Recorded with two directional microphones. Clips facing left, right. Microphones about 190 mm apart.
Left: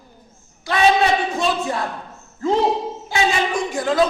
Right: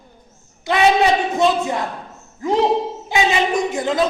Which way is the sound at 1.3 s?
20° right (ahead or behind).